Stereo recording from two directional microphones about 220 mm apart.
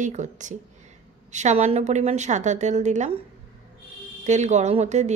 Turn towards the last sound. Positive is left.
turn(degrees=-30)  # may be behind; listen again after turning